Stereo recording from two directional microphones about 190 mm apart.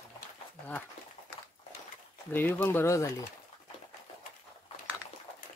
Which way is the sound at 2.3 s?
10° left (ahead or behind).